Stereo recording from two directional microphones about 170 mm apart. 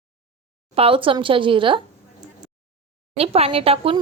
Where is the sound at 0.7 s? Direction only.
35° right (ahead or behind).